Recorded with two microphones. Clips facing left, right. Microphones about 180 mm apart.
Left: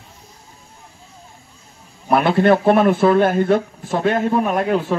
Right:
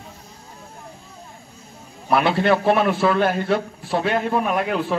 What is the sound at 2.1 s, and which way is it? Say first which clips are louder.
A man's voice: left 4 dB; 50° left (ahead or behind).